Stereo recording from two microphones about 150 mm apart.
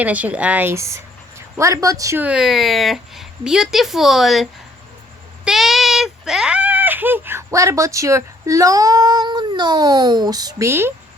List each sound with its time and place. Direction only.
0.0 s speech: 10° right (ahead or behind)
2.2 s a woman's voice: 5° right (ahead or behind)
5.5 s speech: centre (ahead or behind)